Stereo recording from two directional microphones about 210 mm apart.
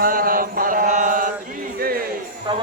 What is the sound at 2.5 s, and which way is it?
Speech, 20° right (ahead or behind).